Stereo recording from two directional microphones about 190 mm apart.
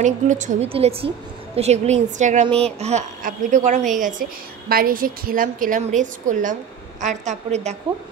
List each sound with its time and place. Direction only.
0.0 s a woman's voice: 40° right (ahead or behind)